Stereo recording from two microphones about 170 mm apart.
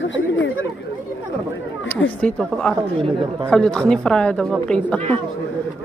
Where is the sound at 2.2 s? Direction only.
5° left (ahead or behind).